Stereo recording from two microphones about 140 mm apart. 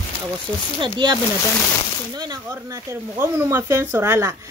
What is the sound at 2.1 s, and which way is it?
Speech, 30° right (ahead or behind).